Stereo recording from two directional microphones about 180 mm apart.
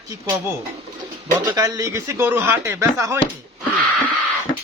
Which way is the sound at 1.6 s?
20° right (ahead or behind).